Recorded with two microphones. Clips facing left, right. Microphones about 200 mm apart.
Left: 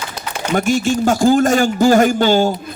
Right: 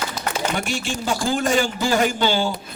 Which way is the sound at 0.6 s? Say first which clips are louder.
Left 10 dB; 45° left (ahead or behind).